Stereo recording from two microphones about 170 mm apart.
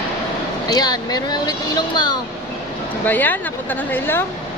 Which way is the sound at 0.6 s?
25° left (ahead or behind).